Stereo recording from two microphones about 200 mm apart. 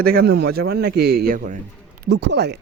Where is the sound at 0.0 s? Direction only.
50° right (ahead or behind).